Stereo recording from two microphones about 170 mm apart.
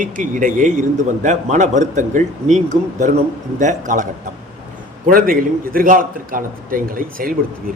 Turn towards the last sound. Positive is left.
turn(degrees=-55)  # may be behind; listen again after turning